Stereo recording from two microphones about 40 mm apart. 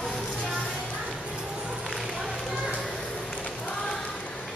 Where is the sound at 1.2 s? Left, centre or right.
Right.